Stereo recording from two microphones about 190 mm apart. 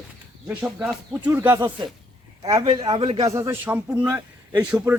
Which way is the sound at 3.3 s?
15° right (ahead or behind).